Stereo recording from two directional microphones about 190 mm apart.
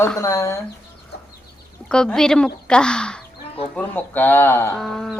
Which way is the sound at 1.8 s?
5° left (ahead or behind).